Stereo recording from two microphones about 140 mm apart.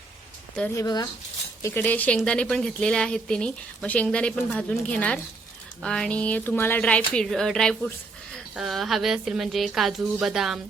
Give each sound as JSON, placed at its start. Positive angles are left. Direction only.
{"t": 0.8, "sound": "speech", "side_deg": 30}
{"t": 1.6, "sound": "a woman's voice", "side_deg": 15}